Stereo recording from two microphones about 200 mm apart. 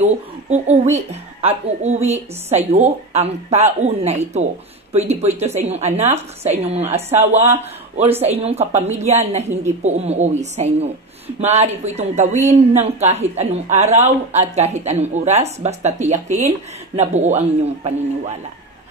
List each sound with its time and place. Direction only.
0.5 s a woman's voice: 35° right (ahead or behind)